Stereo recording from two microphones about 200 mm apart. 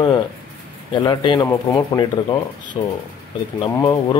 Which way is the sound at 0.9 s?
25° left (ahead or behind).